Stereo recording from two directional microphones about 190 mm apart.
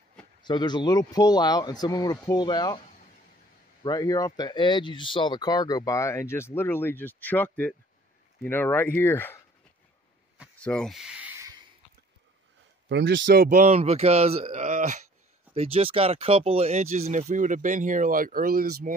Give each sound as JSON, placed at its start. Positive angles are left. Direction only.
{"t": 0.4, "sound": "speech", "side_deg": 25}
{"t": 3.8, "sound": "speech", "side_deg": 20}
{"t": 10.6, "sound": "speech", "side_deg": 5}
{"t": 12.8, "sound": "speech", "side_deg": -70}
{"t": 13.4, "sound": "speech", "side_deg": -45}
{"t": 15.5, "sound": "speech", "side_deg": -30}